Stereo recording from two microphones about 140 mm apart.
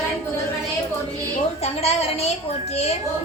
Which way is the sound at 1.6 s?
50° left (ahead or behind).